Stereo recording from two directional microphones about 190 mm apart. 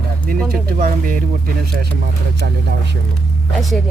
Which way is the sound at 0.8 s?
50° right (ahead or behind).